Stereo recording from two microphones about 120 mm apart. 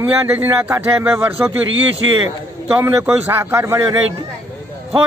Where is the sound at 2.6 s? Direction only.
20° right (ahead or behind).